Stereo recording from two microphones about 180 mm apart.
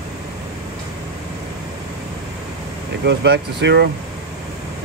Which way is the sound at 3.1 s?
65° right (ahead or behind).